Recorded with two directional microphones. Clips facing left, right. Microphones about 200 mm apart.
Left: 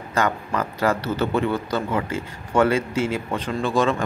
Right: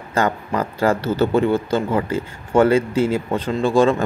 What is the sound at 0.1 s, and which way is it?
A man's voice, 30° right (ahead or behind).